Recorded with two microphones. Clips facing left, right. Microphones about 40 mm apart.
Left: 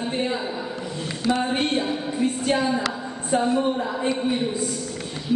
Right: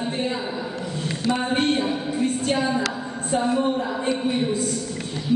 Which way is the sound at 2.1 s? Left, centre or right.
Centre.